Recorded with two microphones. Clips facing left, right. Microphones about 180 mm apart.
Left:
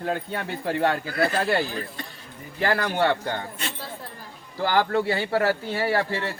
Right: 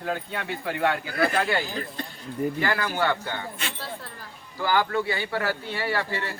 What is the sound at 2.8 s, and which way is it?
Speech, 35° left (ahead or behind).